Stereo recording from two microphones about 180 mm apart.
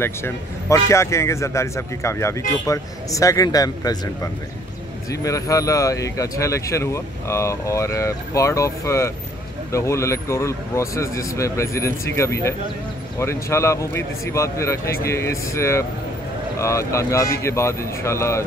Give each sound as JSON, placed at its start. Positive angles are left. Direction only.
{"t": 0.0, "sound": "a man's voice", "side_deg": 15}